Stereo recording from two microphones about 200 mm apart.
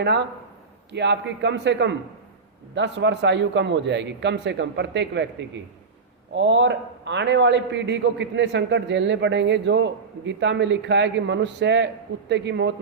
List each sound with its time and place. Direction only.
0.0 s a man's voice: 55° right (ahead or behind)
6.3 s a man's voice: 65° right (ahead or behind)